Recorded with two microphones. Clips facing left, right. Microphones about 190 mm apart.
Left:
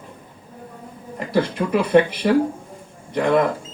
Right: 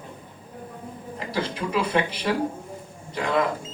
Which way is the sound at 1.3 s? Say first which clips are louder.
Left 7 dB; 55° left (ahead or behind).